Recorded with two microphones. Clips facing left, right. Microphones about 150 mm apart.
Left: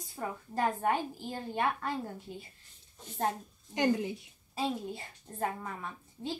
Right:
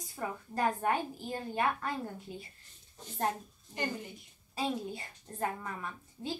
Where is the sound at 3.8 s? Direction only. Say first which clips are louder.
Left 8 dB; 90° left.